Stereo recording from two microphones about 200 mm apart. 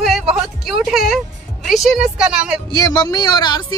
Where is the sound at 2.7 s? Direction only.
20° left (ahead or behind).